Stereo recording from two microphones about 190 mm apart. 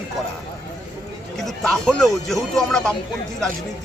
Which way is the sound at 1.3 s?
Centre (ahead or behind).